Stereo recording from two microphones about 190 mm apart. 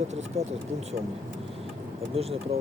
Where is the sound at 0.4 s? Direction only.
35° right (ahead or behind).